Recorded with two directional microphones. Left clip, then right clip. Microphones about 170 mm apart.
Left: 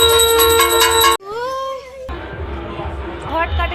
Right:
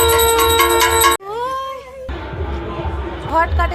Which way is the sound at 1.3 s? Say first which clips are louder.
Right 1 dB; 15° right (ahead or behind).